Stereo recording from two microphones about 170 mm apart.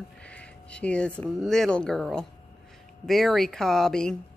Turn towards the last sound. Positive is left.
turn(degrees=5)  # may be behind; listen again after turning